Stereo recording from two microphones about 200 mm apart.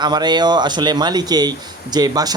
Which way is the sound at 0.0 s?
20° right (ahead or behind).